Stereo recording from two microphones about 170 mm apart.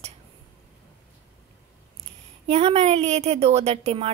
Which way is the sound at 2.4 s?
35° right (ahead or behind).